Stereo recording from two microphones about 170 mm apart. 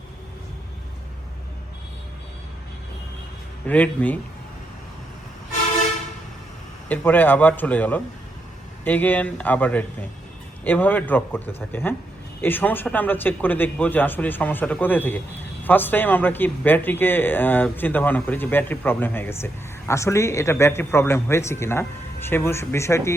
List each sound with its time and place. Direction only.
3.7 s a man's voice: 10° left (ahead or behind)
6.8 s a man's voice: 10° left (ahead or behind)